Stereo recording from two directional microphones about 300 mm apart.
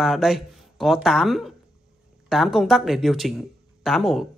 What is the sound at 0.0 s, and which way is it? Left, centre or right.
Speech, centre.